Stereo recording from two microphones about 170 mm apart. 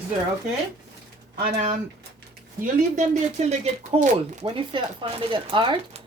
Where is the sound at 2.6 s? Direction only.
45° right (ahead or behind).